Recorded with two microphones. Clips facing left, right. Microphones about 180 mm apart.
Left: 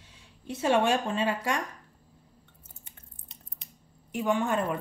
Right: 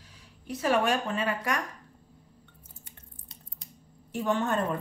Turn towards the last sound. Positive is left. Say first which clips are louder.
# left 1 dB
turn(degrees=10)  # may be behind; listen again after turning